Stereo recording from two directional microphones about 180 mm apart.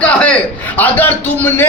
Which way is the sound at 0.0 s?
5° left (ahead or behind).